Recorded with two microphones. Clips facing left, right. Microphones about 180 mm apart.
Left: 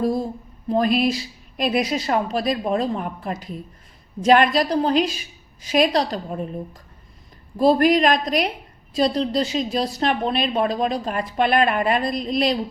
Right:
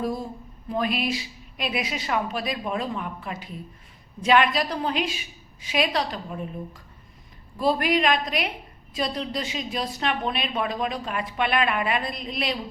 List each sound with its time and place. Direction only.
0.0 s a sound: 35° left (ahead or behind)
0.7 s a woman's voice: 35° left (ahead or behind)
7.5 s a woman's voice: 40° left (ahead or behind)